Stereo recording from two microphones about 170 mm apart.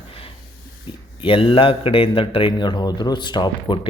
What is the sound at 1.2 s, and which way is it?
Speech, 30° left (ahead or behind).